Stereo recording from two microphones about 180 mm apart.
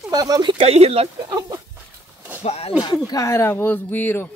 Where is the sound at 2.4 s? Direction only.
35° left (ahead or behind).